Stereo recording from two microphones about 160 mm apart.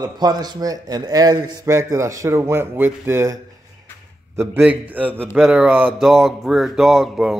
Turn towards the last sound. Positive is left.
turn(degrees=0)  # may be behind; listen again after turning